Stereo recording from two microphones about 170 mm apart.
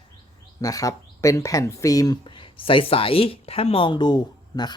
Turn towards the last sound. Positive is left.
turn(degrees=25)  # may be behind; listen again after turning